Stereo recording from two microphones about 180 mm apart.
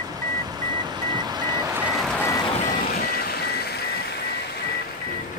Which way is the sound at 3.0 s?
60° left (ahead or behind).